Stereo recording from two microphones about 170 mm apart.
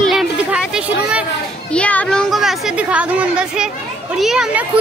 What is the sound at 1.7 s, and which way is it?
A woman's voice, 10° left (ahead or behind).